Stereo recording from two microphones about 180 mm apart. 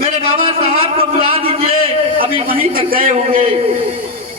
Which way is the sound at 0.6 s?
30° right (ahead or behind).